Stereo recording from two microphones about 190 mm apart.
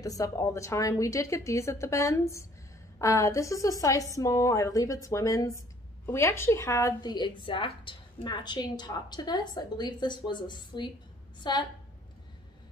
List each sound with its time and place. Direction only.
0.0 s a woman's voice: 20° left (ahead or behind)